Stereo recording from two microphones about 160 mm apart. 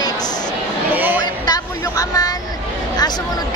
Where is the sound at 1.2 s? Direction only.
25° left (ahead or behind).